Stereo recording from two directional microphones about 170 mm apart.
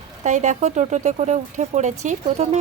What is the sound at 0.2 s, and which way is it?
A woman's voice, 45° right (ahead or behind).